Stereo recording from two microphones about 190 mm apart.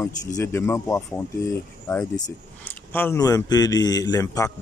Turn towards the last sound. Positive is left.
turn(degrees=20)  # may be behind; listen again after turning